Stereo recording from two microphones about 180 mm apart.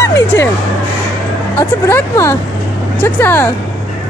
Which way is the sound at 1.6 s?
15° left (ahead or behind).